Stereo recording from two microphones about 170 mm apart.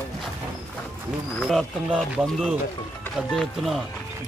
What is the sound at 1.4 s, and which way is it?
Speech, centre (ahead or behind).